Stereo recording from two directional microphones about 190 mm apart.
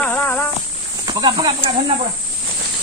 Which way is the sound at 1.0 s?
20° right (ahead or behind).